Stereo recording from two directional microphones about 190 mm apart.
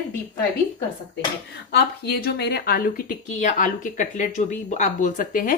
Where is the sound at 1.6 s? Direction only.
55° left (ahead or behind).